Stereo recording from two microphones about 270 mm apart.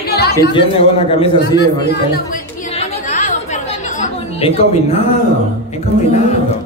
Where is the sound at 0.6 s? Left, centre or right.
Left.